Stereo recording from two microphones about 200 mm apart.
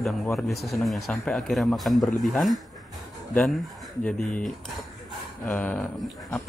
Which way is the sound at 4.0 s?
5° left (ahead or behind).